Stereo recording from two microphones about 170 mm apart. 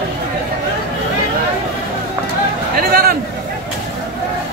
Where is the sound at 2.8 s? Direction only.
60° right (ahead or behind).